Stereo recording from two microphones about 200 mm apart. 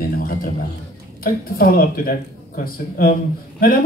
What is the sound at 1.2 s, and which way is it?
Speech, 45° left (ahead or behind).